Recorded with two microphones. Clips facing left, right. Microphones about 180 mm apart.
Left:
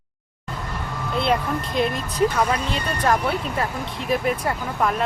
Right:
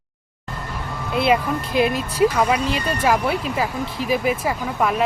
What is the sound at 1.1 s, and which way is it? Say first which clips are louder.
Speech: right 3 dB; 5° right (ahead or behind).